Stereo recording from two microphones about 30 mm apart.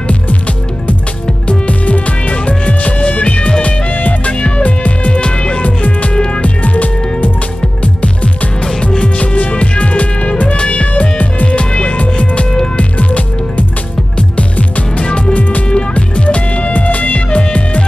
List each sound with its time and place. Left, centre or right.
1.5 s music: left
5.2 s music: left
5.6 s music: left
10.5 s music: left
11.0 s music: left
11.5 s music: left
17.3 s music: left